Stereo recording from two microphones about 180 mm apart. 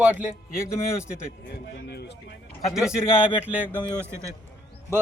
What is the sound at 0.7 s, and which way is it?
Speech, 15° left (ahead or behind).